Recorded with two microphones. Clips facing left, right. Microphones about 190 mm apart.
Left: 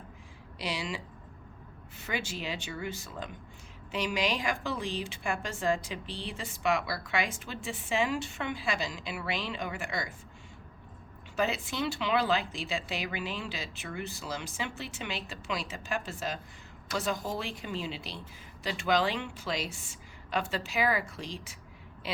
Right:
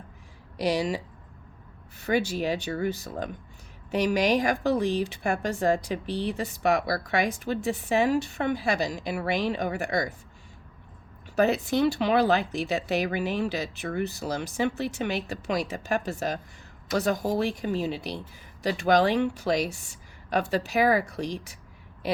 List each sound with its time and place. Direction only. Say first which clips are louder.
0.6 s a woman's voice: right 10 dB; 40° right (ahead or behind)
2.0 s a woman's voice: right 10 dB; 40° right (ahead or behind)
11.3 s a woman's voice: right 8 dB; 40° right (ahead or behind)